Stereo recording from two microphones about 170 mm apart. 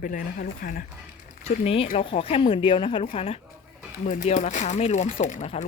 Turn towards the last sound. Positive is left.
turn(degrees=45)  # may be behind; listen again after turning